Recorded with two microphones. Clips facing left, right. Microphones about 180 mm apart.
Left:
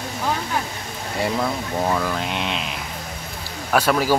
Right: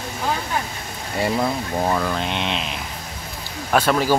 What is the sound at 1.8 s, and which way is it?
Speech, 5° right (ahead or behind).